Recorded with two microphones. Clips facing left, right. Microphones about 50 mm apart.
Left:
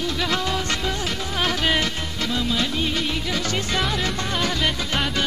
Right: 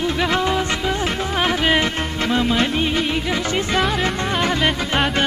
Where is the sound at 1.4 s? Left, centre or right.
Right.